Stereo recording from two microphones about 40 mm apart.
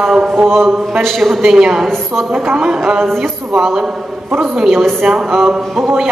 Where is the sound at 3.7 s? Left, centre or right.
Centre.